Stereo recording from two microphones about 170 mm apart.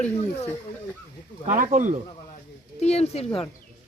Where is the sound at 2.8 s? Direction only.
40° left (ahead or behind).